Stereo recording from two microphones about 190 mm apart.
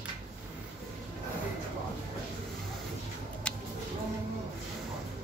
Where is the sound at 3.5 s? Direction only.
5° left (ahead or behind).